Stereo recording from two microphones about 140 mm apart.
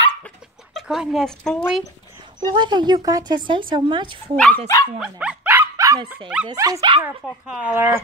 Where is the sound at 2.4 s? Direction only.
30° right (ahead or behind).